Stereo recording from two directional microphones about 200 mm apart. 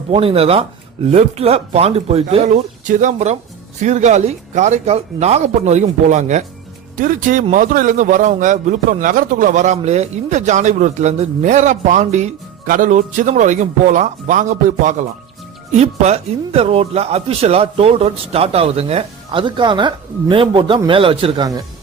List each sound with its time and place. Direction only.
0.1 s speech: 30° right (ahead or behind)